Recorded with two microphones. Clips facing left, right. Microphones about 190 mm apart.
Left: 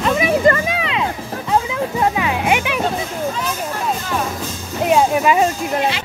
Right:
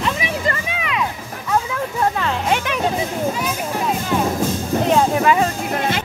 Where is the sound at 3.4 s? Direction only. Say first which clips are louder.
Right 1 dB; 10° right (ahead or behind).